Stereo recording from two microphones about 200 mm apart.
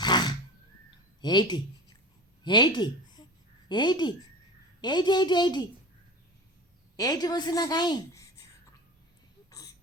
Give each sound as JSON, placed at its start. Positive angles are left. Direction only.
{"t": 0.0, "sound": "a sound", "side_deg": 20}
{"t": 1.2, "sound": "a woman's voice", "side_deg": 20}
{"t": 6.9, "sound": "a woman's voice", "side_deg": 20}